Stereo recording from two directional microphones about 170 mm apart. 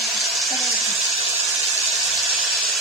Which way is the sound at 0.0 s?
Centre (ahead or behind).